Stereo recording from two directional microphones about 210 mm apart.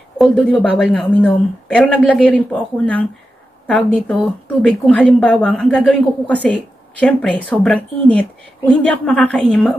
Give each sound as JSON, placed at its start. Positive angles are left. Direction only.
{"t": 0.2, "sound": "speech", "side_deg": 5}